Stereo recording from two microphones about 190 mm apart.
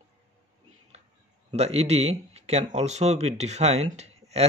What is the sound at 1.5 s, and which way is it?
Speech, 35° right (ahead or behind).